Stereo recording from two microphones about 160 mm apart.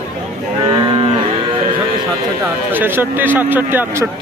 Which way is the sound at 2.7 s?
15° right (ahead or behind).